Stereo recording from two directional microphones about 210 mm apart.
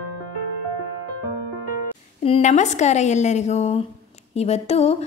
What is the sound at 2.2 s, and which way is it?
A woman's voice, 30° left (ahead or behind).